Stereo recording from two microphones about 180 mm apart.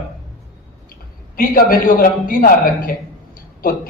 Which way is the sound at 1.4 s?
55° left (ahead or behind).